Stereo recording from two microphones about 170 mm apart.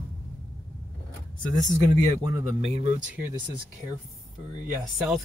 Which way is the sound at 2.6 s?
40° right (ahead or behind).